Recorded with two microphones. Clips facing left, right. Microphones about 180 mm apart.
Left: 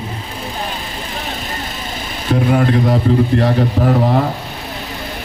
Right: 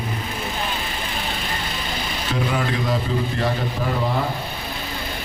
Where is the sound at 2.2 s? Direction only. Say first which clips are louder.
Left 9 dB; 50° left (ahead or behind).